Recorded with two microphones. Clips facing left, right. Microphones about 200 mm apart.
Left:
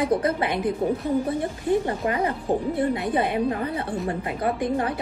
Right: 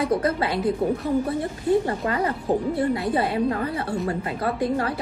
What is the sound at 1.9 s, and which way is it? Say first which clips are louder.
Speech: even; 25° left (ahead or behind).